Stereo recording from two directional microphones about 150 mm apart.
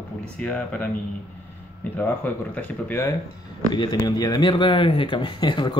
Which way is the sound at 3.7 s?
30° left (ahead or behind).